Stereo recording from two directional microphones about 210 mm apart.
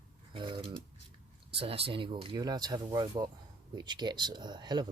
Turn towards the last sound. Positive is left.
turn(degrees=-20)  # may be behind; listen again after turning